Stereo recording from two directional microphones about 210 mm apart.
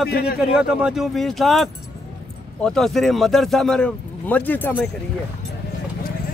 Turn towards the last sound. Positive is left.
turn(degrees=10)  # may be behind; listen again after turning